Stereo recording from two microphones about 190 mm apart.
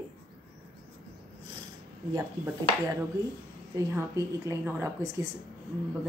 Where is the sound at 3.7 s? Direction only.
15° right (ahead or behind).